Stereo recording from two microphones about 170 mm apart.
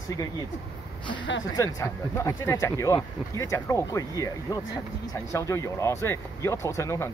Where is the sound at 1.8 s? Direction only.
20° left (ahead or behind).